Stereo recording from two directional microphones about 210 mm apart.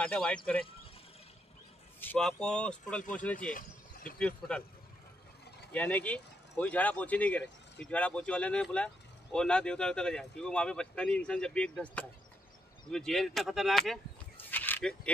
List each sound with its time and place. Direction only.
0.0 s speech: 5° left (ahead or behind)
2.0 s speech: 5° left (ahead or behind)
3.3 s a sound: 40° left (ahead or behind)
4.2 s speech: 5° left (ahead or behind)
5.7 s speech: 5° left (ahead or behind)